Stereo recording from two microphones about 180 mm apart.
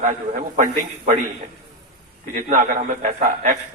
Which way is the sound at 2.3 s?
45° right (ahead or behind).